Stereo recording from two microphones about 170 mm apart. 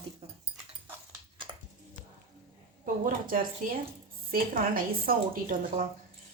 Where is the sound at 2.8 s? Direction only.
50° right (ahead or behind).